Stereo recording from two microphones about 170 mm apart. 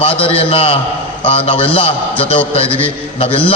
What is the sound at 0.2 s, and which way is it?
A man's voice, 35° left (ahead or behind).